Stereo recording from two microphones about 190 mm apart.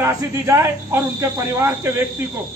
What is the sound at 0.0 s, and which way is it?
A woman's voice, 15° right (ahead or behind).